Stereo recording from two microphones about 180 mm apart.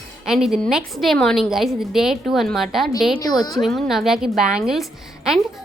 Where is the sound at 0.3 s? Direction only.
Centre (ahead or behind).